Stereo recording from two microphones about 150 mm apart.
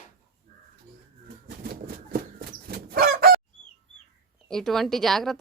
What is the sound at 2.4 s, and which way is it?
Chicken, 90° right.